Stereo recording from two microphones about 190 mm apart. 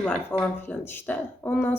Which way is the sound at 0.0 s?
5° left (ahead or behind).